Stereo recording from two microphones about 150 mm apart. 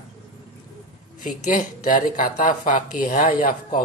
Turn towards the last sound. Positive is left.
turn(degrees=65)  # may be behind; listen again after turning